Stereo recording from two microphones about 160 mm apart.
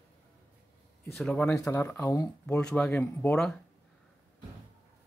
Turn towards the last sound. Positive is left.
turn(degrees=5)  # may be behind; listen again after turning